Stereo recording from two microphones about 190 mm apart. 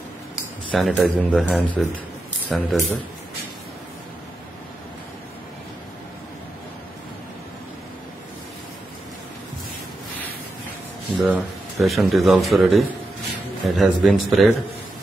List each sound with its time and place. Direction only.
0.7 s speech: centre (ahead or behind)
11.1 s speech: 5° right (ahead or behind)